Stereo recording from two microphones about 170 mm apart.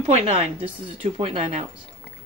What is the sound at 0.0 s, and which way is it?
A woman's voice, 35° right (ahead or behind).